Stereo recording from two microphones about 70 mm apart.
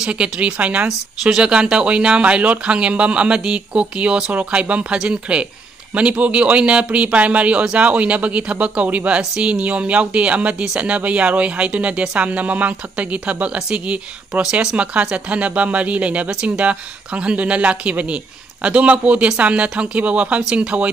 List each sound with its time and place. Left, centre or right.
0.0 s a man's voice: centre